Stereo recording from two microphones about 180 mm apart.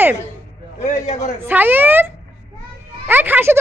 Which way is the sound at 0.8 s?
40° left (ahead or behind).